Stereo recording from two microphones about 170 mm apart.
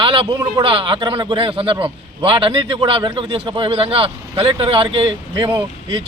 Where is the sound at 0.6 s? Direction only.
30° right (ahead or behind).